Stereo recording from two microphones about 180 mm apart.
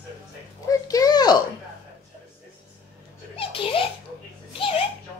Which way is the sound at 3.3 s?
30° left (ahead or behind).